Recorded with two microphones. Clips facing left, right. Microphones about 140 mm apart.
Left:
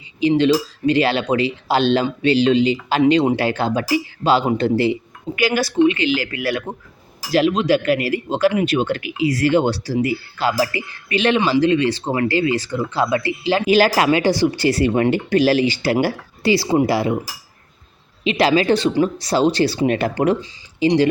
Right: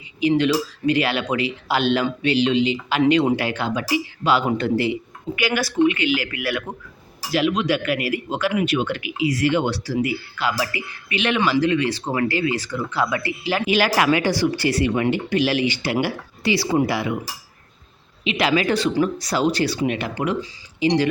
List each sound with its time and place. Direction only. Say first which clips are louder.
0.2 s speech: left 3 dB; 30° left (ahead or behind)
11.3 s speech: left 1 dB; 25° left (ahead or behind)
18.2 s speech: left 4 dB; 35° left (ahead or behind)
19.9 s speech: left 6 dB; 40° left (ahead or behind)
20.4 s speech: left 3 dB; 25° left (ahead or behind)